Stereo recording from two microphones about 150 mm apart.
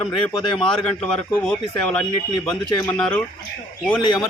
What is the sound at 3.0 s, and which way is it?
Speech, 5° left (ahead or behind).